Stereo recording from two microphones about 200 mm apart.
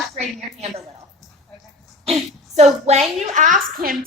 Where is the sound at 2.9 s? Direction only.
35° right (ahead or behind).